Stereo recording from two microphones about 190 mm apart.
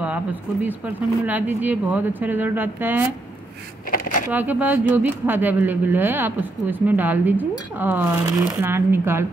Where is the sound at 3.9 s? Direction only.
50° left (ahead or behind).